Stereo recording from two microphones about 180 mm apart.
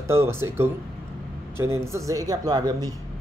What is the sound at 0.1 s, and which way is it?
Speech, 15° right (ahead or behind).